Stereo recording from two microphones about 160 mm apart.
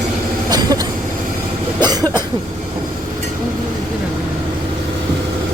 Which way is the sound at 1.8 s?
25° right (ahead or behind).